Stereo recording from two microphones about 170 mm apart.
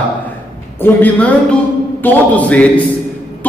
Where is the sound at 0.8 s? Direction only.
10° left (ahead or behind).